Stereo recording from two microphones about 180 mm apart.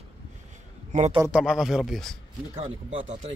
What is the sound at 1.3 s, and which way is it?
Speech, 5° right (ahead or behind).